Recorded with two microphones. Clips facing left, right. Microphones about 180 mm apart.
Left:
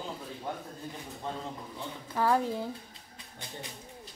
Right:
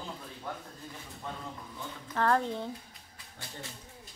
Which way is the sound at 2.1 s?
10° left (ahead or behind).